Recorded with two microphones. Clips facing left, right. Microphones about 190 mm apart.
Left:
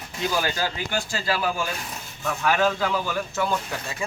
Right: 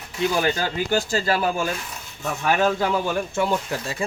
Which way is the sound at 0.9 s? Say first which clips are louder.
Right 5 dB; 45° right (ahead or behind).